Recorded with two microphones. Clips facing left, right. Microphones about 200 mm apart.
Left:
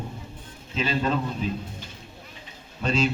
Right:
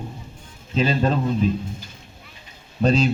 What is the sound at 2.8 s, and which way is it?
Speech, 35° right (ahead or behind).